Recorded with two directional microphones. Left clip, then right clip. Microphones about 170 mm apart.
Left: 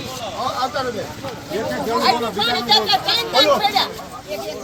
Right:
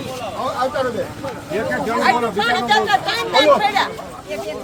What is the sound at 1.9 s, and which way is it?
Speech, 5° left (ahead or behind).